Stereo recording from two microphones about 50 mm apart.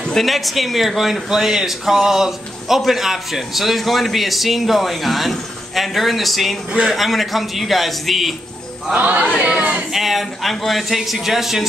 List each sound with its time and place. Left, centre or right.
0.0 s a sound: centre
0.3 s a man's voice: centre
6.7 s speech: centre
7.0 s a man's voice: centre
8.9 s speech: right
9.9 s a man's voice: centre